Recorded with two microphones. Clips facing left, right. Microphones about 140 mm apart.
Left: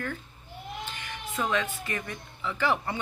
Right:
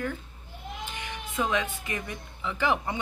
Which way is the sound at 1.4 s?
15° right (ahead or behind).